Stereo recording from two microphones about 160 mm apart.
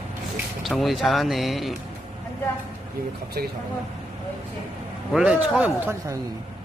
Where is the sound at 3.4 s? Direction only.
70° right (ahead or behind).